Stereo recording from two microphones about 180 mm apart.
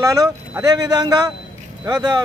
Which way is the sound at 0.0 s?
20° right (ahead or behind).